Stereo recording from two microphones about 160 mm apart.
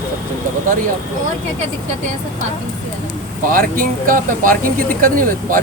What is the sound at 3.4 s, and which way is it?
Speech, 60° right (ahead or behind).